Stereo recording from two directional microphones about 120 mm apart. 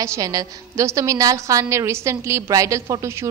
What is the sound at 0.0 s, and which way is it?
A woman's voice, 25° right (ahead or behind).